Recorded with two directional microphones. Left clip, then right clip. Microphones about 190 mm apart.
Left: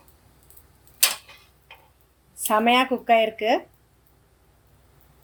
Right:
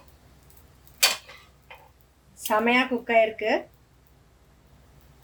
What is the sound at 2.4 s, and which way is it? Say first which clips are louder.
Speech: left 3 dB; 45° left (ahead or behind).